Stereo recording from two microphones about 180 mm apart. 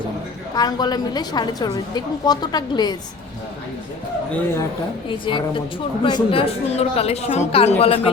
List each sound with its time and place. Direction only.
0.5 s a woman's voice: 20° left (ahead or behind)
5.2 s a woman's voice: 30° left (ahead or behind)